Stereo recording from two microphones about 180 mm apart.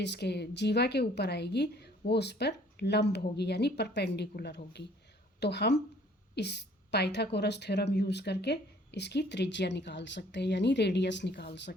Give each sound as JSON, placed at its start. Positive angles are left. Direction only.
{"t": 0.0, "sound": "a woman's voice", "side_deg": 70}